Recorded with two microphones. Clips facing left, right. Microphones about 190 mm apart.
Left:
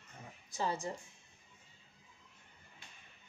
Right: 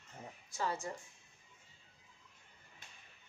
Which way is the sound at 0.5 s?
20° left (ahead or behind).